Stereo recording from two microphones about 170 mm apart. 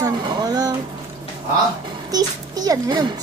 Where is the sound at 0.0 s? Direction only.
25° right (ahead or behind).